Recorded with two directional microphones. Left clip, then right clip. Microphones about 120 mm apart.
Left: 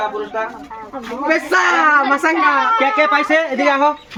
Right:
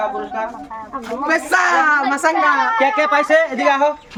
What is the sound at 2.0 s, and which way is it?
A woman's voice, 20° right (ahead or behind).